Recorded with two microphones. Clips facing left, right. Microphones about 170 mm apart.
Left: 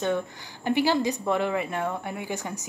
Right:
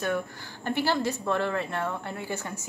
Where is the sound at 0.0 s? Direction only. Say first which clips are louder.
Left 2 dB; 20° left (ahead or behind).